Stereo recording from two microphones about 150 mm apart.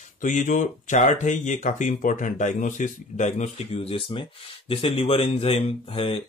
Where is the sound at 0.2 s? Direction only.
55° left (ahead or behind).